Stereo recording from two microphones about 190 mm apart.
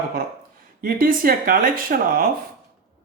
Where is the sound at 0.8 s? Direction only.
50° right (ahead or behind).